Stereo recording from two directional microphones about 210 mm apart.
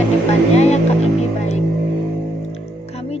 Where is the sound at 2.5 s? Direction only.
30° left (ahead or behind).